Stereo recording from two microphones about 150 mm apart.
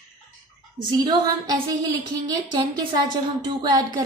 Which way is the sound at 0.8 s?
30° right (ahead or behind).